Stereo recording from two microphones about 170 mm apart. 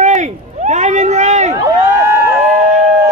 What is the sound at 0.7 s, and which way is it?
Vehicle, 45° right (ahead or behind).